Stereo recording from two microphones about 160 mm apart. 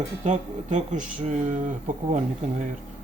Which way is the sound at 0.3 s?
50° right (ahead or behind).